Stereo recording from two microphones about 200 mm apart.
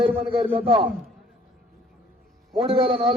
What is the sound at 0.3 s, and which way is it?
Speech, 30° right (ahead or behind).